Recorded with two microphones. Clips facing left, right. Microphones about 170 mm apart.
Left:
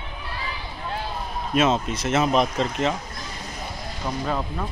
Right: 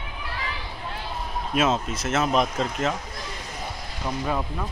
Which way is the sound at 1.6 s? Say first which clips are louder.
Left 2 dB; 5° right (ahead or behind).